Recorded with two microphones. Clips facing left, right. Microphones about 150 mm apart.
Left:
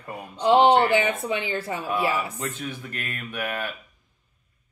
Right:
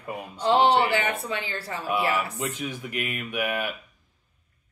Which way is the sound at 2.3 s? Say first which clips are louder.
Right 1 dB; 15° right (ahead or behind).